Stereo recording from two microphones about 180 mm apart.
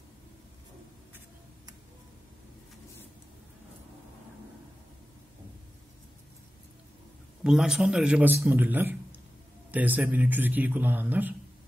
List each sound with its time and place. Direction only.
7.4 s a man's voice: 5° right (ahead or behind)